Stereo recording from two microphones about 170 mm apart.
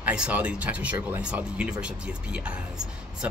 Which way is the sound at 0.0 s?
5° right (ahead or behind).